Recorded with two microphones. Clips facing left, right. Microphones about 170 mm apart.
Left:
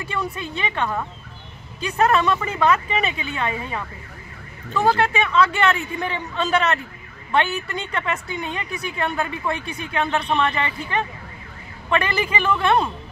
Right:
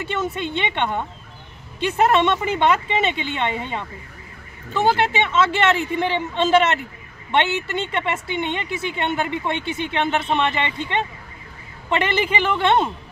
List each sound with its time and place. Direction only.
0.0 s a woman's voice: 25° right (ahead or behind)